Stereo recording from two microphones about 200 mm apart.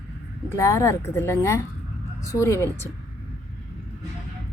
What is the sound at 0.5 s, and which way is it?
Speech, 15° left (ahead or behind).